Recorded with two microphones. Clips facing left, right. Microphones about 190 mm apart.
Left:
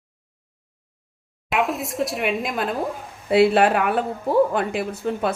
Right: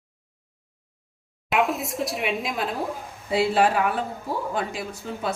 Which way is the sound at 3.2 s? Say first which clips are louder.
Left 5 dB; 65° left (ahead or behind).